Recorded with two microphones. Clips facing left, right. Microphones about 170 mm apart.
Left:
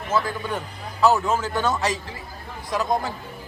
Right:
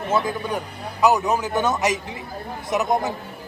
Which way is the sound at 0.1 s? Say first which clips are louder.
Right 1 dB; 20° right (ahead or behind).